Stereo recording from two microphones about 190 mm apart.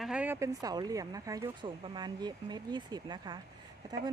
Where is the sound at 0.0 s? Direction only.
5° right (ahead or behind).